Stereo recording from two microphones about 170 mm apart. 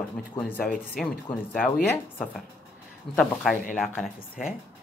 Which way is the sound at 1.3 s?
35° left (ahead or behind).